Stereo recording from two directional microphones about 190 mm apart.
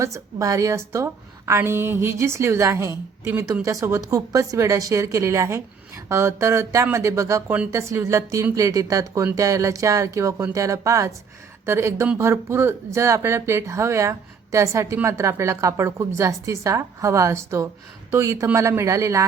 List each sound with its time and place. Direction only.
0.0 s speech: 15° right (ahead or behind)